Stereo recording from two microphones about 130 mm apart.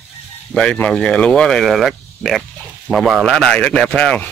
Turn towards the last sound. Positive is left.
turn(degrees=5)  # may be behind; listen again after turning